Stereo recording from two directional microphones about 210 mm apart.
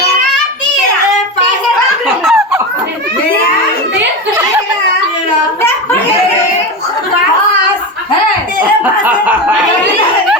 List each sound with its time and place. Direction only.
2.2 s laughter: centre (ahead or behind)
8.8 s snicker: 10° right (ahead or behind)